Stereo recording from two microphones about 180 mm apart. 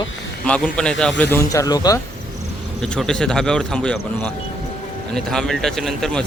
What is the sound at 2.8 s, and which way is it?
A man's voice, 5° left (ahead or behind).